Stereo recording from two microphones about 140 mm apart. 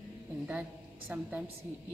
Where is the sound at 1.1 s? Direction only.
10° right (ahead or behind).